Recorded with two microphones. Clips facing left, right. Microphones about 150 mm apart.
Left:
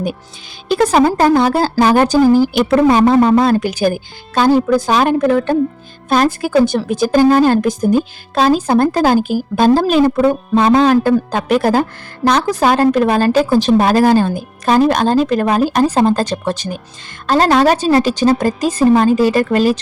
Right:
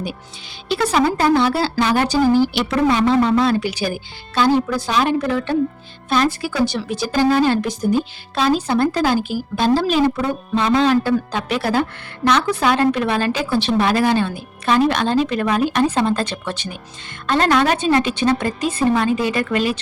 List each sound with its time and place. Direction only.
0.7 s a woman's voice: 45° left (ahead or behind)